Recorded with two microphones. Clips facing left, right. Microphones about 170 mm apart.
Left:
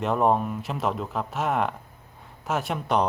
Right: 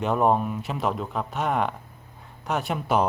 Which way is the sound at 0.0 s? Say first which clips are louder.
Right 1 dB; centre (ahead or behind).